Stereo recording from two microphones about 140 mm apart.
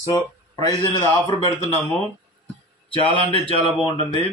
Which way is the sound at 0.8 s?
25° left (ahead or behind).